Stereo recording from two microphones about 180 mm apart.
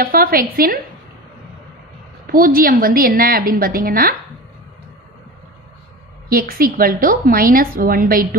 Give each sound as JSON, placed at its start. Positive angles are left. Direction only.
{"t": 0.0, "sound": "a woman's voice", "side_deg": -55}
{"t": 2.3, "sound": "a woman's voice", "side_deg": -55}
{"t": 6.2, "sound": "a woman's voice", "side_deg": -55}